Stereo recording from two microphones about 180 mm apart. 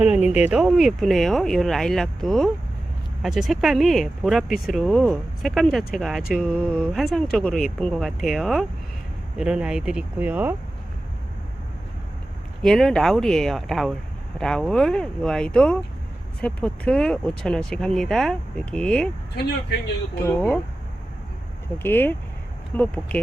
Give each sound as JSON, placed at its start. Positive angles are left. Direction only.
{"t": 0.3, "sound": "speech", "side_deg": -5}
{"t": 12.6, "sound": "speech", "side_deg": 0}
{"t": 20.2, "sound": "speech", "side_deg": 10}
{"t": 21.8, "sound": "speech", "side_deg": 10}